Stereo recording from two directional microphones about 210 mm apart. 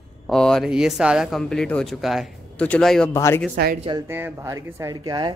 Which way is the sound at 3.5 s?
45° right (ahead or behind).